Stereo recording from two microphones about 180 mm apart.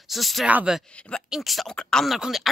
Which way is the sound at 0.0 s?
Centre (ahead or behind).